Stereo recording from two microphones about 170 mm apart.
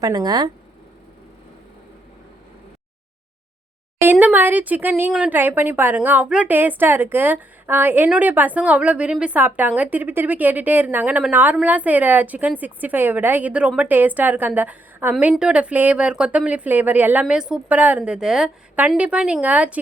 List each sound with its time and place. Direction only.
0.0 s speech: 25° right (ahead or behind)
4.0 s speech: 10° right (ahead or behind)